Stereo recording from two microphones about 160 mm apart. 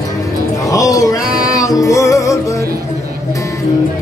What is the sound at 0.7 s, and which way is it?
Music, 20° left (ahead or behind).